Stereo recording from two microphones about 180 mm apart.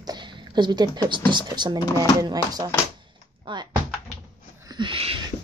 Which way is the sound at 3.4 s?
25° right (ahead or behind).